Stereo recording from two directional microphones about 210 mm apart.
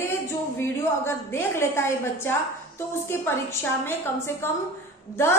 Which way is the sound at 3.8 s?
10° left (ahead or behind).